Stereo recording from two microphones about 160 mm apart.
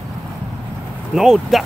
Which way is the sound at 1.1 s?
Centre (ahead or behind).